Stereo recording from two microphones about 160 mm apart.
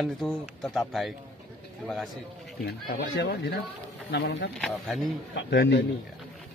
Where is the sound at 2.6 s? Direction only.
90° left.